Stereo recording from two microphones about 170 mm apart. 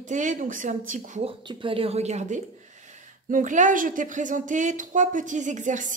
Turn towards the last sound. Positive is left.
turn(degrees=-45)  # may be behind; listen again after turning